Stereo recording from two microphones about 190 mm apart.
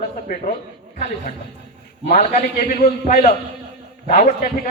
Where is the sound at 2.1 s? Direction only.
45° left (ahead or behind).